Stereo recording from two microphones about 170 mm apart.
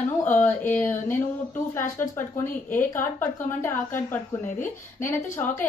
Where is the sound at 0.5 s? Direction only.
10° left (ahead or behind).